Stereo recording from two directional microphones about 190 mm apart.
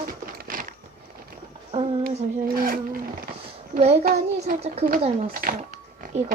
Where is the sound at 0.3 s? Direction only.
45° right (ahead or behind).